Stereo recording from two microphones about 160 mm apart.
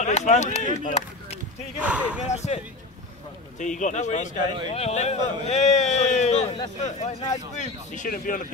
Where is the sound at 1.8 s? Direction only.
10° right (ahead or behind).